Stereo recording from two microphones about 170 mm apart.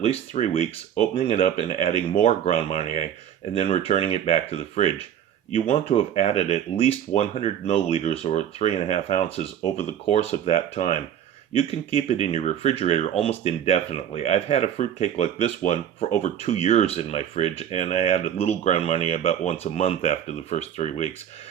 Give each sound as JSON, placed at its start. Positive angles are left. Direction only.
{"t": 0.0, "sound": "speech", "side_deg": 40}
{"t": 11.5, "sound": "speech", "side_deg": 35}